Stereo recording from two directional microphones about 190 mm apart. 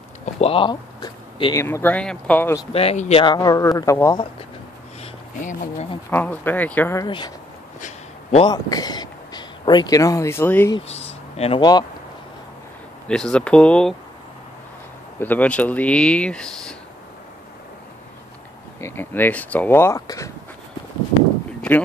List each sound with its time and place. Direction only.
0.2 s speech: 30° left (ahead or behind); by 2.6 s 10° left (ahead or behind)
2.7 s speech: 30° left (ahead or behind); by 4.2 s 15° left (ahead or behind)
5.0 s a sound: 40° left (ahead or behind)
6.0 s speech: 10° left (ahead or behind)
7.1 s speech: 25° left (ahead or behind)
7.8 s a sound: 35° left (ahead or behind)
8.5 s speech: 20° left (ahead or behind)
10.8 s a sound: 35° left (ahead or behind)
13.1 s speech: 5° left (ahead or behind)
15.1 s speech: 10° left (ahead or behind)
18.8 s speech: 10° left (ahead or behind)
21.5 s a sound: 10° left (ahead or behind)